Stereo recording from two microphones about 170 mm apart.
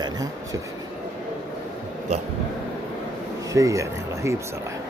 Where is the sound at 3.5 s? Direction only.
20° right (ahead or behind).